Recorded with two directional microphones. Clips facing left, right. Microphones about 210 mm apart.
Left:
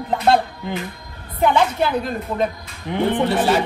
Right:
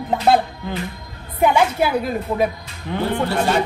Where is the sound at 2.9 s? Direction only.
20° left (ahead or behind).